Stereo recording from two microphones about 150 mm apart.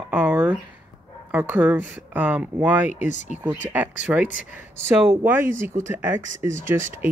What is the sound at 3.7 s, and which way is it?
Speech, 10° right (ahead or behind).